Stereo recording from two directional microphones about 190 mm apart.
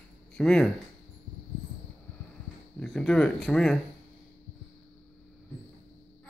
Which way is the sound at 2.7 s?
5° left (ahead or behind).